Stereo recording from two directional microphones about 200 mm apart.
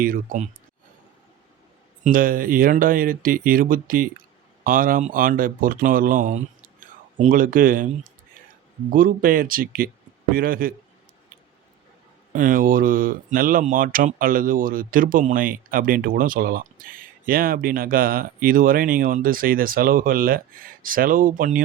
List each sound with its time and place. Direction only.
0.0 s speech: 45° right (ahead or behind)
2.0 s speech: 45° right (ahead or behind)
8.9 s speech: 45° right (ahead or behind)
12.3 s speech: 40° right (ahead or behind)